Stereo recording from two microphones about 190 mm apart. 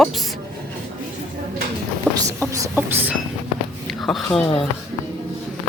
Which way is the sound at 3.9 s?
Centre (ahead or behind).